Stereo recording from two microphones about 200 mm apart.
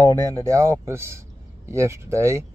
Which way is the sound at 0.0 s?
15° right (ahead or behind).